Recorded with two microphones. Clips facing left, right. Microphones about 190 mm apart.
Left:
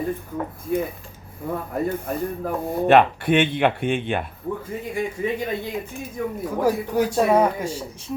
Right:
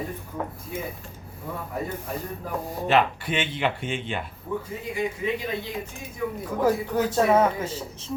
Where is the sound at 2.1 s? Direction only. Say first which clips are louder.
Left 6 dB; 55° left (ahead or behind).